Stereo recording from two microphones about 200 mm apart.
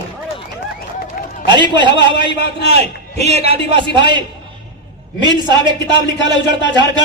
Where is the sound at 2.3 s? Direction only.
60° left (ahead or behind).